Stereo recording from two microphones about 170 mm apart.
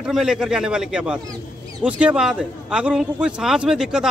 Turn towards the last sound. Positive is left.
turn(degrees=-5)  # may be behind; listen again after turning